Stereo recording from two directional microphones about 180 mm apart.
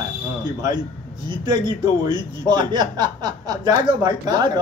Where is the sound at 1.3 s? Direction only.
25° right (ahead or behind).